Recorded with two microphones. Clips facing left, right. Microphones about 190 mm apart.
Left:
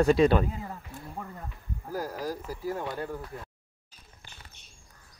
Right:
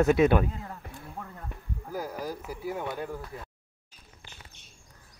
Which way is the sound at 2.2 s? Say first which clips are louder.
Left 2 dB; 10° right (ahead or behind).